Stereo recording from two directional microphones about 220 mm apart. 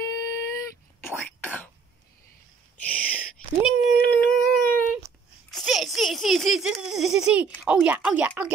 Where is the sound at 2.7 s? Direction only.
5° left (ahead or behind).